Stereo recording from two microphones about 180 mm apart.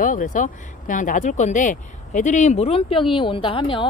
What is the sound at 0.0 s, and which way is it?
Speech, 45° left (ahead or behind).